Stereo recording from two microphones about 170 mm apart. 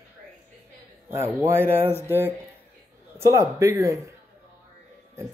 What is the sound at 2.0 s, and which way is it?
Speech, 10° right (ahead or behind).